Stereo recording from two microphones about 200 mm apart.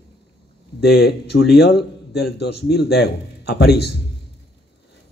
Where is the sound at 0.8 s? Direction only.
55° left (ahead or behind).